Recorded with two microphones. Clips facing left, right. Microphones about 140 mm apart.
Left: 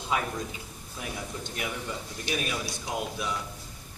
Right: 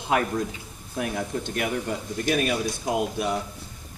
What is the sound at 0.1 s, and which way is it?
Speech, 65° right (ahead or behind).